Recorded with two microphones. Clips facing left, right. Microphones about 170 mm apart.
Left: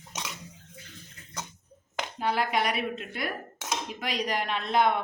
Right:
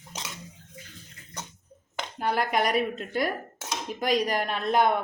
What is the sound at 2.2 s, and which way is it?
Speech, 45° right (ahead or behind).